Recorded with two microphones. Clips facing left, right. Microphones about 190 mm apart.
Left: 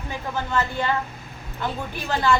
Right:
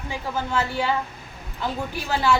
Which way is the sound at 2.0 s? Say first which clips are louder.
Even; 10° right (ahead or behind).